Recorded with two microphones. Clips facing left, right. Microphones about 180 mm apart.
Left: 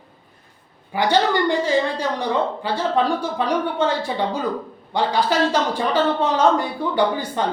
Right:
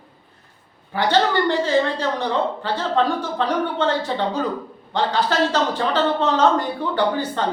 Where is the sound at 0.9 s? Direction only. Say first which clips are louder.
Even; 15° left (ahead or behind).